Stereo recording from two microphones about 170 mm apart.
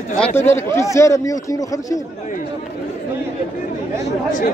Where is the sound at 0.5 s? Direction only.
15° left (ahead or behind).